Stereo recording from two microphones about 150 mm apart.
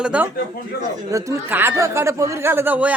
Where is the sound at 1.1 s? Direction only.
20° right (ahead or behind).